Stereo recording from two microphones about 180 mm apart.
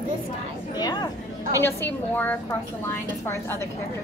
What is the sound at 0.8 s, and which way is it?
Speech, 20° left (ahead or behind).